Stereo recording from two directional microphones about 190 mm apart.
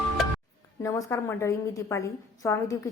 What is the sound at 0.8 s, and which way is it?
A woman's voice, 15° left (ahead or behind).